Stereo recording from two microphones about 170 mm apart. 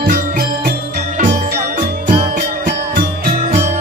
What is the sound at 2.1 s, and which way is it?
Music, 40° right (ahead or behind).